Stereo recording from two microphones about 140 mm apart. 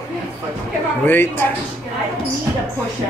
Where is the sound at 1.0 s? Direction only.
15° left (ahead or behind).